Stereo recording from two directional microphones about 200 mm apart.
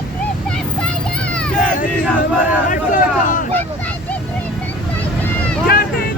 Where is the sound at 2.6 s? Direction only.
40° left (ahead or behind).